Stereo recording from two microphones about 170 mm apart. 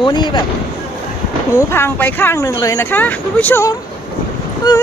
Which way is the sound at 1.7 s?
10° left (ahead or behind).